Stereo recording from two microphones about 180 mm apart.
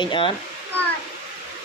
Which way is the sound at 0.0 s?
25° left (ahead or behind).